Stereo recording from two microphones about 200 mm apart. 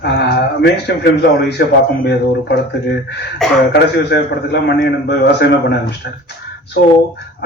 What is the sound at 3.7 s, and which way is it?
A man's voice, 55° left (ahead or behind).